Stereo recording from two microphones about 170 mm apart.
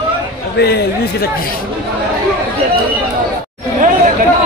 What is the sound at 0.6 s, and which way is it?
Speech, 70° left (ahead or behind).